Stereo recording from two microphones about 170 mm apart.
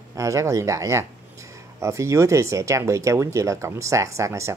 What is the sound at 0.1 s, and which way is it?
Speech, 20° right (ahead or behind).